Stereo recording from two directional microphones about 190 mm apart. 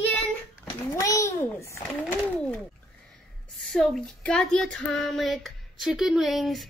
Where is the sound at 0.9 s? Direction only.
15° left (ahead or behind).